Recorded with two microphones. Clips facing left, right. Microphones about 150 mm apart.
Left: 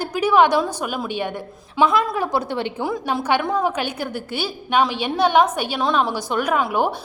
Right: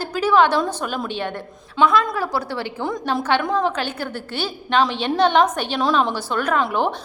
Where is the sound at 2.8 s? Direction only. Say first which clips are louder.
Right 1 dB; 5° left (ahead or behind).